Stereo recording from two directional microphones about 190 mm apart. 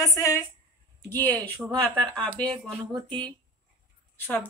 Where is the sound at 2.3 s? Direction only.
5° left (ahead or behind).